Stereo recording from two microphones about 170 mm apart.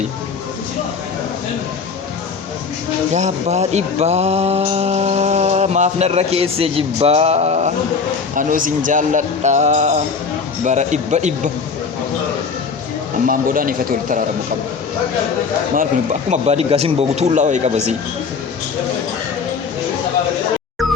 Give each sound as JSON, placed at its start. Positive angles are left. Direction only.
{"t": 3.1, "sound": "speech", "side_deg": -45}
{"t": 8.4, "sound": "a man's voice", "side_deg": -50}
{"t": 13.2, "sound": "speech", "side_deg": -55}
{"t": 16.3, "sound": "speech", "side_deg": -40}